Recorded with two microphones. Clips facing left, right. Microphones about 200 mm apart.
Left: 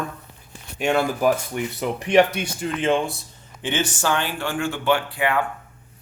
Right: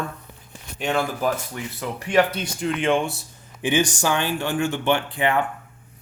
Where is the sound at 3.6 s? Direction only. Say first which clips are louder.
Right 3 dB; 15° right (ahead or behind).